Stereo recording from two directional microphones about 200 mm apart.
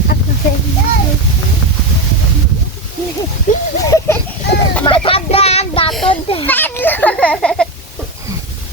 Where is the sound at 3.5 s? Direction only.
40° left (ahead or behind).